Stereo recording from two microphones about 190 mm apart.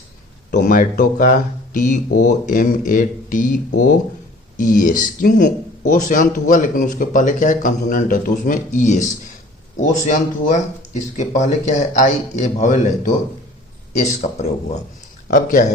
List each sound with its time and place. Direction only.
0.5 s speech: 45° left (ahead or behind)